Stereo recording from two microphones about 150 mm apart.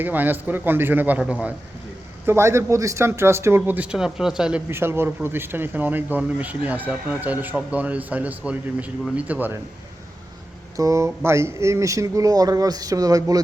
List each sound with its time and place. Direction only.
0.0 s speech: 10° right (ahead or behind)
4.7 s speech: 15° right (ahead or behind)
10.8 s speech: 20° right (ahead or behind)